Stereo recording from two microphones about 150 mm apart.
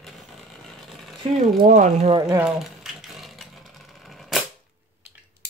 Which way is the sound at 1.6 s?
55° right (ahead or behind).